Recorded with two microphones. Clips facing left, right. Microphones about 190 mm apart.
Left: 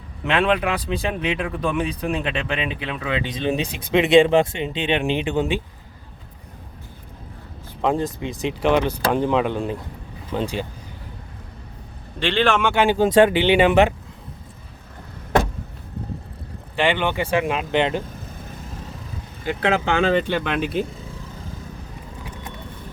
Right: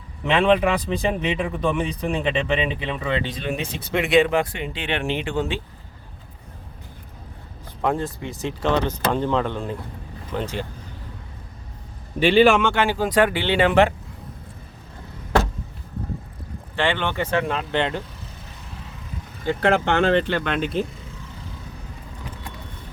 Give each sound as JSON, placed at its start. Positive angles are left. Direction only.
{"t": 0.3, "sound": "speech", "side_deg": 5}
{"t": 3.2, "sound": "speech", "side_deg": 20}
{"t": 7.8, "sound": "speech", "side_deg": 20}
{"t": 12.2, "sound": "speech", "side_deg": -10}
{"t": 12.7, "sound": "speech", "side_deg": 20}
{"t": 16.7, "sound": "speech", "side_deg": 15}
{"t": 18.0, "sound": "vehicle", "side_deg": 50}
{"t": 19.5, "sound": "speech", "side_deg": 5}